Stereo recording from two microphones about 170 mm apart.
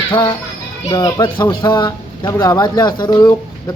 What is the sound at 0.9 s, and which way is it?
Speech, 20° left (ahead or behind).